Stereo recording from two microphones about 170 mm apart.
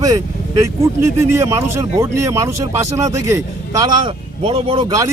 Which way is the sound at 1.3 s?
15° right (ahead or behind).